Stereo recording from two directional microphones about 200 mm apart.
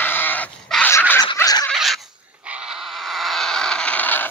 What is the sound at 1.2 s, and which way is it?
Snicker, 20° left (ahead or behind).